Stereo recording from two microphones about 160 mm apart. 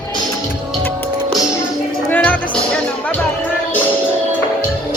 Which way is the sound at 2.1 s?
10° left (ahead or behind).